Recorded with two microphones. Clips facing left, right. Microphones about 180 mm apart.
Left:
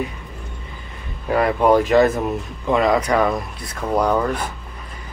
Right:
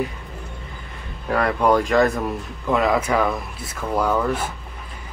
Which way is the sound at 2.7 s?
5° right (ahead or behind).